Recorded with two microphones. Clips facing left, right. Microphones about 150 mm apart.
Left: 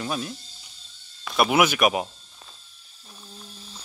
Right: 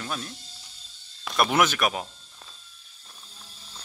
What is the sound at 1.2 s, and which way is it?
Speech, 5° left (ahead or behind).